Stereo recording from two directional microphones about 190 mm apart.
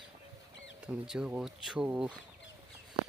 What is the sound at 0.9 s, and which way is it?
Speech, 5° right (ahead or behind).